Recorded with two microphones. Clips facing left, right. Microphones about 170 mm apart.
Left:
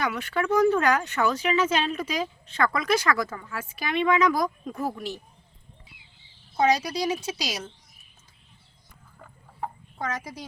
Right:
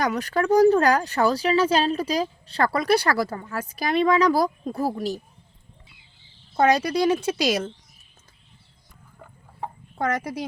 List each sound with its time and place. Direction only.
0.0 s speech: 40° right (ahead or behind)
6.6 s speech: 55° right (ahead or behind)
9.1 s chicken: 5° right (ahead or behind)
10.0 s speech: 65° right (ahead or behind)